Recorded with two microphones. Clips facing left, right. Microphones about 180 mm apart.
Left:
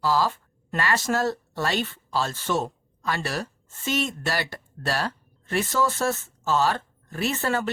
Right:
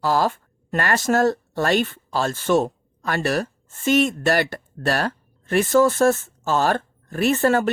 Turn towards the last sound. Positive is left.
turn(degrees=-50)  # may be behind; listen again after turning